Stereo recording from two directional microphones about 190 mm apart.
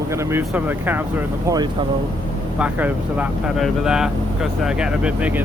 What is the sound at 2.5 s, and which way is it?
Speech, 5° right (ahead or behind).